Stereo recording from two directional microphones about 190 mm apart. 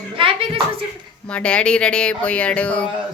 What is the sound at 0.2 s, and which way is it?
Speech, 30° right (ahead or behind).